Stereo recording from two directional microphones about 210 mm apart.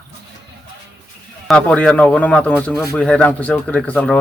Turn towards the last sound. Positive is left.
turn(degrees=5)  # may be behind; listen again after turning